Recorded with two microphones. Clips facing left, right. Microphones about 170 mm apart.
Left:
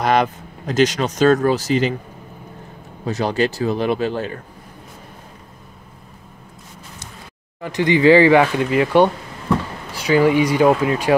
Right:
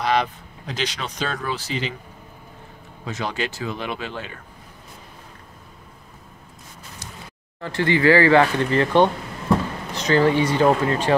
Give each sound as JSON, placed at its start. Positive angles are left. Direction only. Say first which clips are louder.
{"t": 0.0, "sound": "speech", "louder": "left 5 dB", "side_deg": 50}
{"t": 3.1, "sound": "speech", "louder": "left 8 dB", "side_deg": 35}
{"t": 7.6, "sound": "speech", "louder": "left 4 dB", "side_deg": 15}